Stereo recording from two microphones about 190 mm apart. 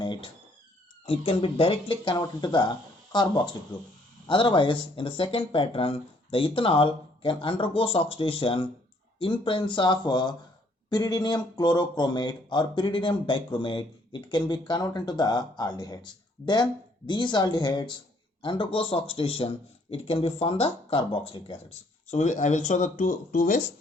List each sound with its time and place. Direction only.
0.0 s a sound: 25° left (ahead or behind)
1.0 s speech: 30° left (ahead or behind)
17.1 s speech: 25° left (ahead or behind)
22.1 s speech: 40° left (ahead or behind)